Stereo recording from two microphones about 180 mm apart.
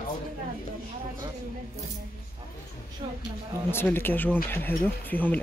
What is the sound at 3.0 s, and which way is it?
Speech, 30° right (ahead or behind).